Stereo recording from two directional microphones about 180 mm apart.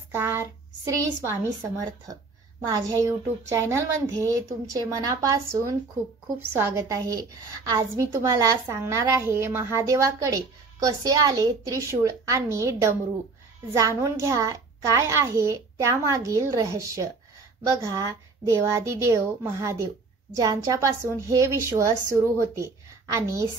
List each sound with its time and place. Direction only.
0.1 s child singing: 15° right (ahead or behind)
0.9 s a woman's voice: 15° right (ahead or behind)
13.7 s a woman's voice: 15° right (ahead or behind)